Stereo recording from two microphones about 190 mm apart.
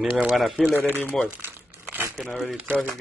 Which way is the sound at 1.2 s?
10° right (ahead or behind).